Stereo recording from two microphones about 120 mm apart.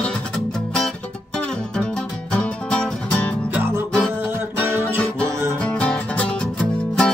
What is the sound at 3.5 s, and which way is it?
Music, 15° right (ahead or behind).